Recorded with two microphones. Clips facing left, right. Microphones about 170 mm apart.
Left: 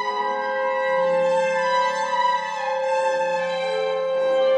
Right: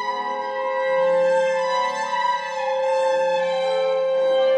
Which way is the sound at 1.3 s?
20° right (ahead or behind).